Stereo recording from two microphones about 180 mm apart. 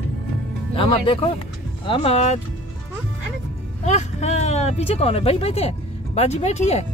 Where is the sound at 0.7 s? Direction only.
30° left (ahead or behind).